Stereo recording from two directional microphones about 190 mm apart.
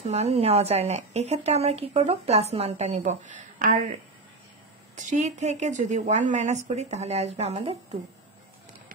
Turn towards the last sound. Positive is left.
turn(degrees=-35)  # may be behind; listen again after turning